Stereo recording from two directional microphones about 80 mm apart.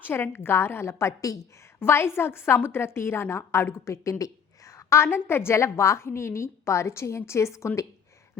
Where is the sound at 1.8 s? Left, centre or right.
Left.